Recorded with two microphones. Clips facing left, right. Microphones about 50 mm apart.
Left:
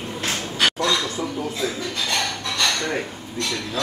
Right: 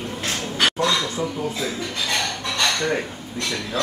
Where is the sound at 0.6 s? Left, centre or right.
Centre.